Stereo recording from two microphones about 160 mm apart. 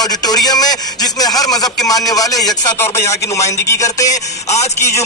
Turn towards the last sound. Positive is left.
turn(degrees=15)  # may be behind; listen again after turning